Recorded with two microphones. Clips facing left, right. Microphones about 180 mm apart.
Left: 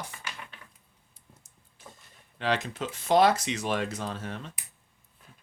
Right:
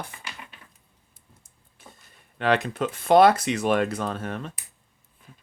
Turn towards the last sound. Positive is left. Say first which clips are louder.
# right 6 dB
turn(degrees=-55)  # may be behind; listen again after turning